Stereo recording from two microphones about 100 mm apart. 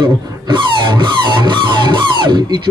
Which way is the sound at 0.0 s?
55° right (ahead or behind).